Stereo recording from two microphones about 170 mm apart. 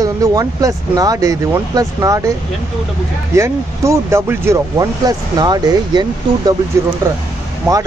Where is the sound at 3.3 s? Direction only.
15° right (ahead or behind).